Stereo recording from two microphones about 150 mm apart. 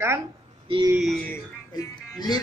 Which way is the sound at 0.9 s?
Centre (ahead or behind).